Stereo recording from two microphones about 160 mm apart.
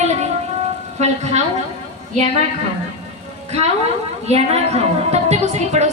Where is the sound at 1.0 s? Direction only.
45° right (ahead or behind).